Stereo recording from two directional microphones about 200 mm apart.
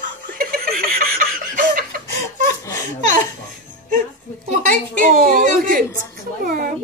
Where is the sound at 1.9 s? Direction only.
45° right (ahead or behind).